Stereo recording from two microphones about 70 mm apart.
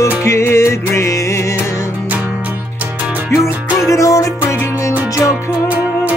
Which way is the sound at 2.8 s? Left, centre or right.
Right.